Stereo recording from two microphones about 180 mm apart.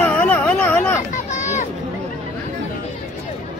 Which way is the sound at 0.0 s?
10° left (ahead or behind).